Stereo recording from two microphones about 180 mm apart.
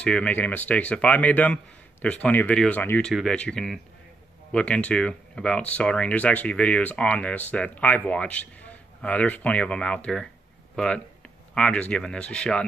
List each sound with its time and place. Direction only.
0.0 s speech: 5° left (ahead or behind)